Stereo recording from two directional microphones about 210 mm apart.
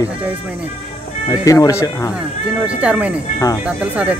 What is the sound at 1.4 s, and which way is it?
Speech, 15° left (ahead or behind).